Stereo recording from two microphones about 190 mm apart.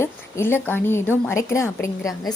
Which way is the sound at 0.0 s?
10° left (ahead or behind).